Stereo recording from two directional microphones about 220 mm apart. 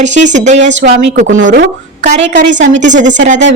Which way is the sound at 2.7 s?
35° right (ahead or behind).